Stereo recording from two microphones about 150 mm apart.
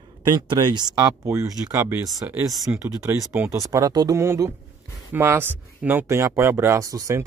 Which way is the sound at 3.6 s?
25° right (ahead or behind).